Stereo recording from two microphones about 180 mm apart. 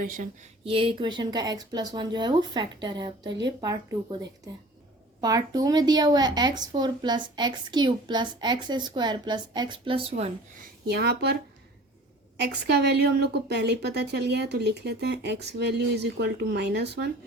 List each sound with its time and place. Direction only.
0.6 s a woman's voice: 30° right (ahead or behind)
5.2 s a woman's voice: 20° right (ahead or behind)
10.9 s speech: 60° right (ahead or behind)
12.4 s a woman's voice: 65° right (ahead or behind)